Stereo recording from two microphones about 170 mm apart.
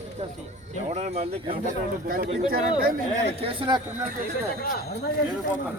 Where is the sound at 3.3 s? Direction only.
35° right (ahead or behind).